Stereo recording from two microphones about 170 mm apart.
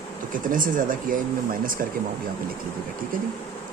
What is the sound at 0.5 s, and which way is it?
Speech, 55° right (ahead or behind).